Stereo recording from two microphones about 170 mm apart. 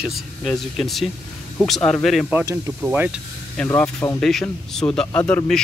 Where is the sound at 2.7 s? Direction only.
10° right (ahead or behind).